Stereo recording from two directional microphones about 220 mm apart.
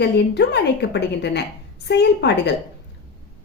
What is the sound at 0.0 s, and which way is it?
A woman's voice, 50° left (ahead or behind).